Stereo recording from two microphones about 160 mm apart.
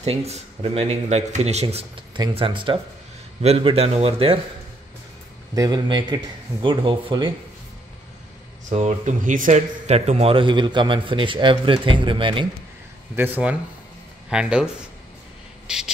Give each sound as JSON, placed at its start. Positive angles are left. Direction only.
{"t": 0.0, "sound": "speech", "side_deg": -40}
{"t": 2.1, "sound": "speech", "side_deg": -30}
{"t": 5.5, "sound": "speech", "side_deg": -25}
{"t": 8.6, "sound": "speech", "side_deg": -50}
{"t": 13.1, "sound": "speech", "side_deg": -10}
{"t": 15.6, "sound": "a sound", "side_deg": -5}